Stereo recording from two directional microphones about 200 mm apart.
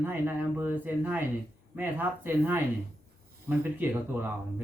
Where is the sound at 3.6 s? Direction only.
10° right (ahead or behind).